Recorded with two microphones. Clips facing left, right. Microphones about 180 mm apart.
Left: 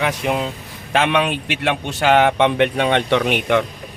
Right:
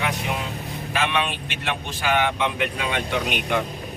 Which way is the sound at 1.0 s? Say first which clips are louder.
Left 6 dB; 65° left (ahead or behind).